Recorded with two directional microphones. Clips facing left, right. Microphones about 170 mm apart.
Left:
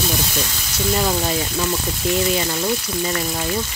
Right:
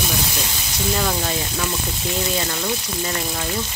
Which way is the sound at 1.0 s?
20° left (ahead or behind).